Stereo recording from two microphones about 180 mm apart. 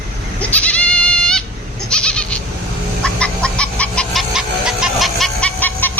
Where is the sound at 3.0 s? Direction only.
5° left (ahead or behind).